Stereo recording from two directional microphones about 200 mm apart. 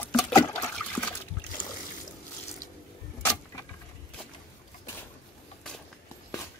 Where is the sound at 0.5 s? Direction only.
5° left (ahead or behind).